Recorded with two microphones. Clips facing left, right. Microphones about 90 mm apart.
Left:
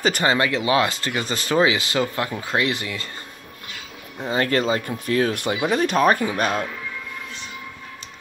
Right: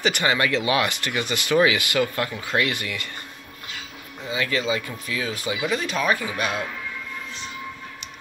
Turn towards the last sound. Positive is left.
turn(degrees=45)  # may be behind; listen again after turning